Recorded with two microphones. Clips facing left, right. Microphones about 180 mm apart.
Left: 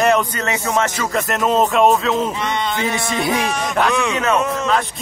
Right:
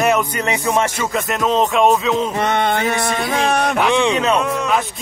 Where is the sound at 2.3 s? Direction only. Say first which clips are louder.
Right 4 dB; 55° right (ahead or behind).